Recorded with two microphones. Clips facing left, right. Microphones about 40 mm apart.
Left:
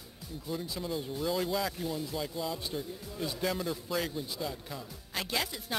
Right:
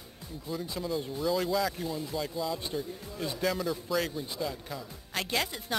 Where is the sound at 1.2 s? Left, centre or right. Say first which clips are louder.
Right 3 dB; centre.